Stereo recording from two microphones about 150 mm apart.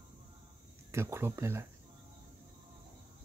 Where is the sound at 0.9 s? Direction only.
15° right (ahead or behind).